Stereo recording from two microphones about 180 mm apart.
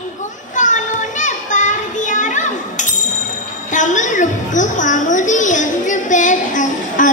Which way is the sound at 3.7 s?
45° left (ahead or behind).